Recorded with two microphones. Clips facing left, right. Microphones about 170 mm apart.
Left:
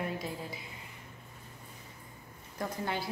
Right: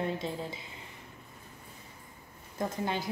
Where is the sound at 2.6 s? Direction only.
20° right (ahead or behind).